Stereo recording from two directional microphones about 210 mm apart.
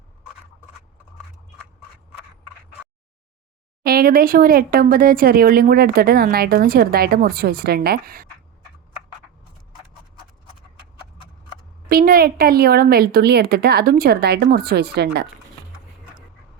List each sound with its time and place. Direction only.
3.8 s speech: 45° right (ahead or behind)
11.9 s speech: 45° right (ahead or behind)